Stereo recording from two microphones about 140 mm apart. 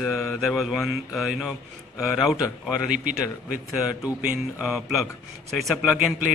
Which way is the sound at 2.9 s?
65° right (ahead or behind).